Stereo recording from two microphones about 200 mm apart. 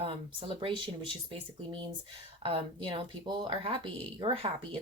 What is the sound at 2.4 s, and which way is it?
A woman's voice, 25° right (ahead or behind).